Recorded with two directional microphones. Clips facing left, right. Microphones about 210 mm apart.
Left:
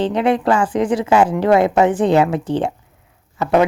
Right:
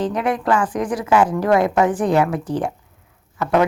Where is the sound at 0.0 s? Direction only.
25° left (ahead or behind).